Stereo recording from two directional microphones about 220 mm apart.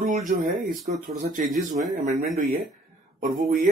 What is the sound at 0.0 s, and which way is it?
Speech, 35° right (ahead or behind).